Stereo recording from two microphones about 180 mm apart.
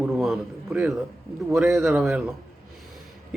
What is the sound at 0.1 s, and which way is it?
A man's voice, centre (ahead or behind).